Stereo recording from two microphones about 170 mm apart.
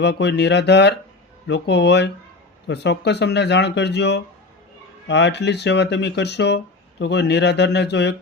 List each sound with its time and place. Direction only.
0.0 s speech: 90° left